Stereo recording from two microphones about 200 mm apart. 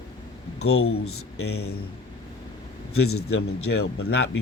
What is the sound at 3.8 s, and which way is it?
Speech, 55° left (ahead or behind).